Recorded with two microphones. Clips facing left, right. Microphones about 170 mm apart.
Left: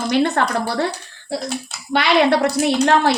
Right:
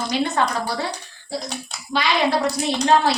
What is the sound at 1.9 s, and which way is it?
Speech, 65° left (ahead or behind).